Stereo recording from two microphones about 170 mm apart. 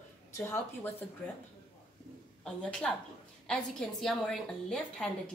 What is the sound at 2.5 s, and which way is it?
A woman's voice, 5° left (ahead or behind).